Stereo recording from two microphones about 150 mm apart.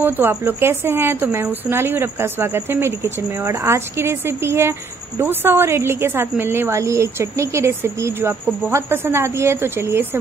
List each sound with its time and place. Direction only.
0.0 s a woman's voice: 15° right (ahead or behind)